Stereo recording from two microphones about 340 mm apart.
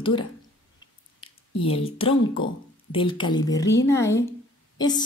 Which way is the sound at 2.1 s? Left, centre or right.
Left.